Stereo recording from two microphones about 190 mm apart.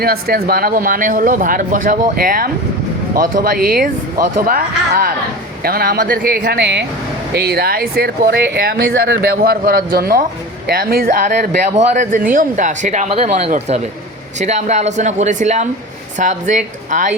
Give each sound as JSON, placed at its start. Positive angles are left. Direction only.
{"t": 0.0, "sound": "speech", "side_deg": -55}